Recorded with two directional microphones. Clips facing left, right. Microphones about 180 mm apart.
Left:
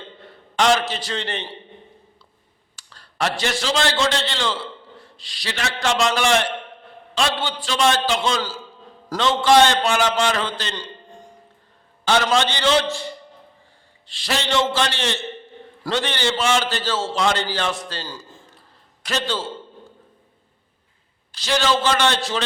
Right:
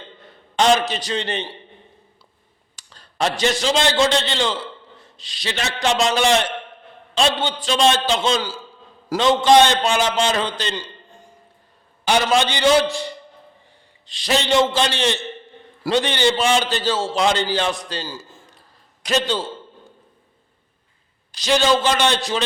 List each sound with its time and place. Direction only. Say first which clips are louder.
0.5 s a man's voice: right 2 dB; 20° right (ahead or behind)
2.7 s a man's voice: right 2 dB; 20° right (ahead or behind)
12.0 s a man's voice: right 1 dB; 15° right (ahead or behind)
14.1 s a man's voice: right 4 dB; 20° right (ahead or behind)
21.3 s a man's voice: right 3 dB; 15° right (ahead or behind)